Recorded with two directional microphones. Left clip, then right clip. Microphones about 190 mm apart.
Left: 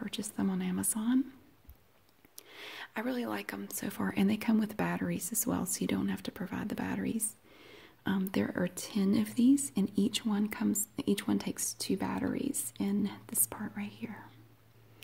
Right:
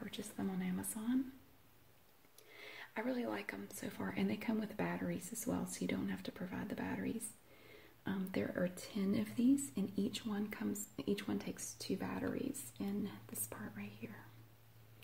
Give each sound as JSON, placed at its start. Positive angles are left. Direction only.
{"t": 0.0, "sound": "speech", "side_deg": 50}
{"t": 2.3, "sound": "speech", "side_deg": 45}